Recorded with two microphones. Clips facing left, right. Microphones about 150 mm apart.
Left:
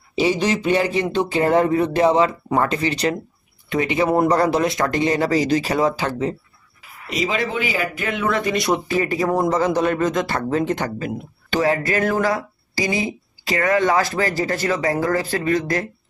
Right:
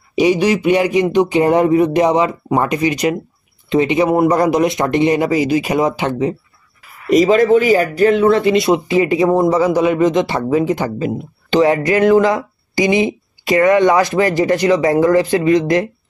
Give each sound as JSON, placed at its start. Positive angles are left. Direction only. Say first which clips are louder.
{"t": 0.1, "sound": "speech", "louder": "right 6 dB", "side_deg": -15}
{"t": 7.1, "sound": "speech", "louder": "right 13 dB", "side_deg": -45}
{"t": 11.5, "sound": "speech", "louder": "right 7 dB", "side_deg": -20}